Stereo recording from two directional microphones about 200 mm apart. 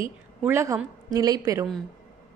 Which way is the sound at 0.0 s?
10° right (ahead or behind).